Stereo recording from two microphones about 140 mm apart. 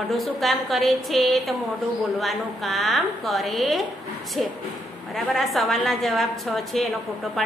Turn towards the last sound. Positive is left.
turn(degrees=0)  # may be behind; listen again after turning